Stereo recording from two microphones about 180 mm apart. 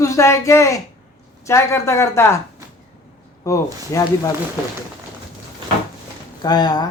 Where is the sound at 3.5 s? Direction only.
20° left (ahead or behind).